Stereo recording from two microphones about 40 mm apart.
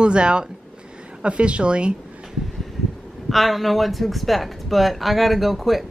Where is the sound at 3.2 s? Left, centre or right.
Centre.